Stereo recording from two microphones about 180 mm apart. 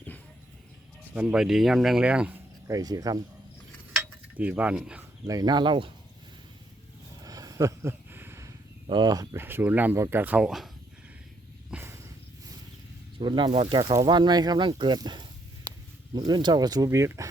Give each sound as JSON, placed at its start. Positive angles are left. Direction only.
{"t": 1.1, "sound": "speech", "side_deg": -5}
{"t": 2.6, "sound": "speech", "side_deg": -20}
{"t": 4.0, "sound": "cutlery", "side_deg": -10}
{"t": 5.2, "sound": "speech", "side_deg": -20}
{"t": 7.3, "sound": "speech", "side_deg": -20}
{"t": 11.7, "sound": "a sound", "side_deg": -15}
{"t": 13.1, "sound": "speech", "side_deg": -25}
{"t": 13.7, "sound": "speech", "side_deg": -20}